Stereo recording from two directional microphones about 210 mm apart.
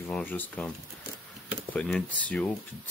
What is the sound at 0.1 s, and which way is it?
Speech, 10° left (ahead or behind).